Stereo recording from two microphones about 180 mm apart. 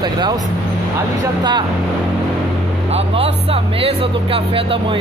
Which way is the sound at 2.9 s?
35° right (ahead or behind).